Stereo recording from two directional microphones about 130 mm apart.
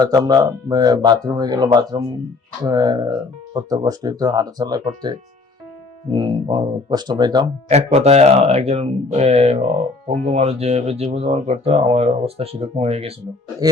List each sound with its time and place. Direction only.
0.0 s speech: 30° right (ahead or behind)
6.1 s speech: 40° right (ahead or behind)
7.7 s speech: 55° right (ahead or behind)